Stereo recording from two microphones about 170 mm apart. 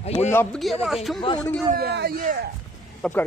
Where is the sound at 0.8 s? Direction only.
Centre (ahead or behind).